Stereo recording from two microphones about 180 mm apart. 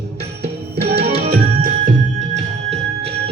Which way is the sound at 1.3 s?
50° right (ahead or behind).